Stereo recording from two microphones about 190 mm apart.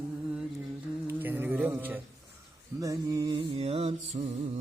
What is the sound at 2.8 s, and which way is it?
Music, 15° right (ahead or behind).